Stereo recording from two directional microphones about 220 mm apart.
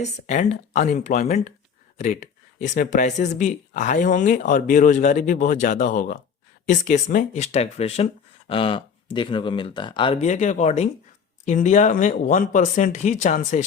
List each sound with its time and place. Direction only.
0.0 s speech: 30° left (ahead or behind)